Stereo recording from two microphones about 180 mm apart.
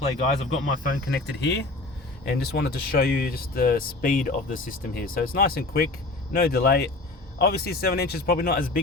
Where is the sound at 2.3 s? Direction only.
65° left (ahead or behind).